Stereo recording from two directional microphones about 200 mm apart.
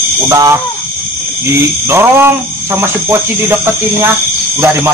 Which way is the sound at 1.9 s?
10° right (ahead or behind).